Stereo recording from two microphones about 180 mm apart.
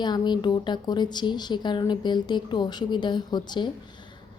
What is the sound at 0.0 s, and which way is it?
A woman's voice, 25° left (ahead or behind).